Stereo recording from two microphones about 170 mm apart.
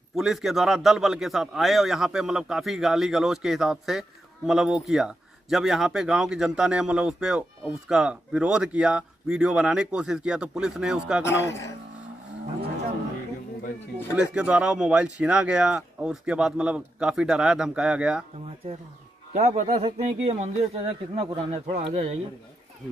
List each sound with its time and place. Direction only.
0.1 s speech: centre (ahead or behind)
11.2 s a man's voice: 15° left (ahead or behind)
14.1 s speech: 5° right (ahead or behind)
19.3 s a man's voice: 40° right (ahead or behind)